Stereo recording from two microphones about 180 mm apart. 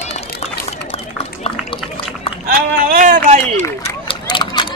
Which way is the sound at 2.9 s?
45° right (ahead or behind).